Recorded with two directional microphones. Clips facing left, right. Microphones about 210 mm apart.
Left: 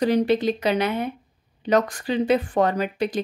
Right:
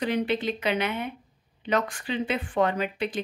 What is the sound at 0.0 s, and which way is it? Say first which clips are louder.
Speech: left 7 dB; 40° left (ahead or behind).